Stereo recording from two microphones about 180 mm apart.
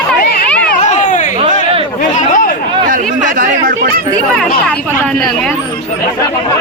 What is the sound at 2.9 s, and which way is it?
Chatter, 45° right (ahead or behind).